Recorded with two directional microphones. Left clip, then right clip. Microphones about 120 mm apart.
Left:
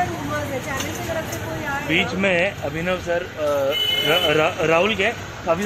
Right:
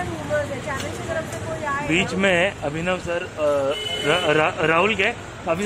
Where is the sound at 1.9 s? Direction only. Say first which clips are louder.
Even; 65° right (ahead or behind).